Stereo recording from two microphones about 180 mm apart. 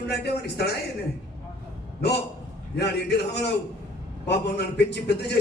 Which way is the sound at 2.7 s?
70° left (ahead or behind).